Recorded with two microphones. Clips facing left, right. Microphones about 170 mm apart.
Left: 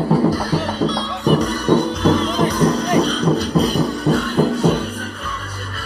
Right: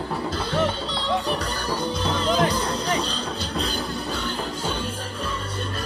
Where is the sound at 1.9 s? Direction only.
30° right (ahead or behind).